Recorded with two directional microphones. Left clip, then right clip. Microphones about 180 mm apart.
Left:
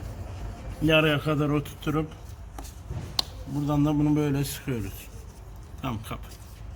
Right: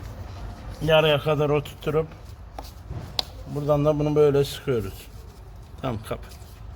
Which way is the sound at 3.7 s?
50° right (ahead or behind).